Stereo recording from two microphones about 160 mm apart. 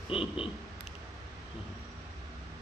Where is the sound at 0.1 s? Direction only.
35° left (ahead or behind).